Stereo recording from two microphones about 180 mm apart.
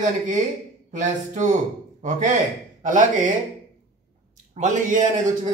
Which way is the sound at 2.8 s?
45° right (ahead or behind).